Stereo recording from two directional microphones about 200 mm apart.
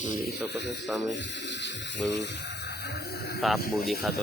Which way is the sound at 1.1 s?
60° left (ahead or behind).